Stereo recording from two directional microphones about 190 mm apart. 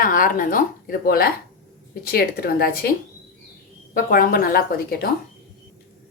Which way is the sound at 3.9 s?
50° left (ahead or behind).